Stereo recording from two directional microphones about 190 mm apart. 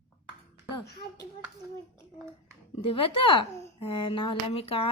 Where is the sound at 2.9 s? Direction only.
30° left (ahead or behind).